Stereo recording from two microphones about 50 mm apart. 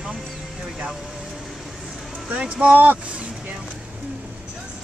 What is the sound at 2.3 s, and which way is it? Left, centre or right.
Speech, right.